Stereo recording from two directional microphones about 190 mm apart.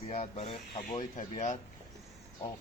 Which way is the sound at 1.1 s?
40° left (ahead or behind).